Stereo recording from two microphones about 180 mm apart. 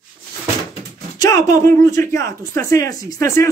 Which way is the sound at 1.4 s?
45° right (ahead or behind).